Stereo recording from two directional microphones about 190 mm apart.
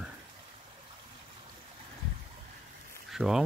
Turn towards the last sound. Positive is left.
turn(degrees=0)  # may be behind; listen again after turning